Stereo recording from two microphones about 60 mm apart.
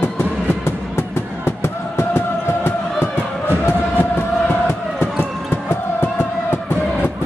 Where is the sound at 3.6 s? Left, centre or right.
Left.